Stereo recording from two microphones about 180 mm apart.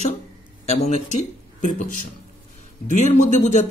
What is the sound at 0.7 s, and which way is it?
Speech, 40° left (ahead or behind).